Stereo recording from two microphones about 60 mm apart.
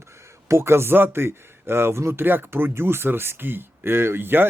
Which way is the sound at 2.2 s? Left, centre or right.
Right.